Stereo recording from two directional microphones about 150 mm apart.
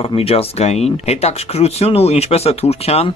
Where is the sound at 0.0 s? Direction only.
40° left (ahead or behind).